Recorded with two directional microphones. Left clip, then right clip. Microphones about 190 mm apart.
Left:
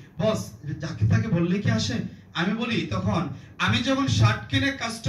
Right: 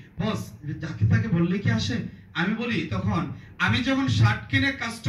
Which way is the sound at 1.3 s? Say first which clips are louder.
Left 2 dB; 55° left (ahead or behind).